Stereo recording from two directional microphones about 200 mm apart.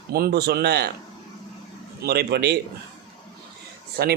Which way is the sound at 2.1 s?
55° right (ahead or behind).